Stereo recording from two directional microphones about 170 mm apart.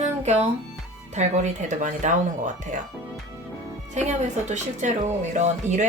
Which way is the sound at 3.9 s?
45° right (ahead or behind).